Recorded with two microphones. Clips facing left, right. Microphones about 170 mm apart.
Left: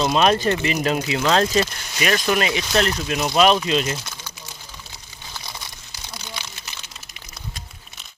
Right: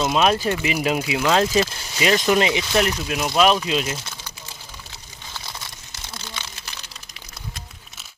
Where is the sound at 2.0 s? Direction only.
20° right (ahead or behind).